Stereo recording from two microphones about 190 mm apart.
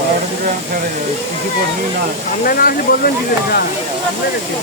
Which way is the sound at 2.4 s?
50° left (ahead or behind).